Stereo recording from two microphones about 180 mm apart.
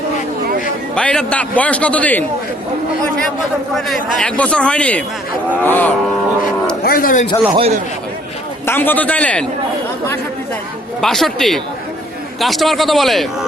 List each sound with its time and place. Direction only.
0.9 s a man's voice: 5° left (ahead or behind)
3.8 s a man's voice: centre (ahead or behind)
6.8 s a man's voice: 55° left (ahead or behind)
7.5 s speech: 35° right (ahead or behind)
8.6 s a man's voice: 10° left (ahead or behind)
11.0 s a man's voice: centre (ahead or behind)